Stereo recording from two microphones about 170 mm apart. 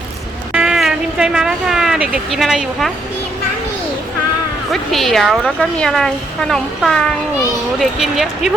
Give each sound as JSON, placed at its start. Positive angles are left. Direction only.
{"t": 0.5, "sound": "speech", "side_deg": -5}
{"t": 4.7, "sound": "a woman's voice", "side_deg": 0}